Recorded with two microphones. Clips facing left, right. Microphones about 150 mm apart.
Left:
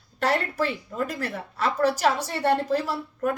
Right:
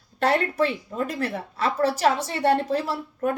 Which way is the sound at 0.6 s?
25° right (ahead or behind).